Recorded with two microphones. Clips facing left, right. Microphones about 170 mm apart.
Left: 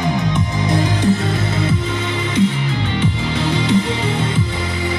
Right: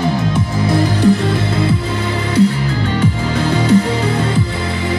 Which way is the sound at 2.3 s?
40° right (ahead or behind).